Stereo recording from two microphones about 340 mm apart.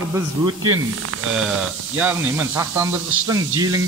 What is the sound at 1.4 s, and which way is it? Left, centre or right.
A man's voice, centre.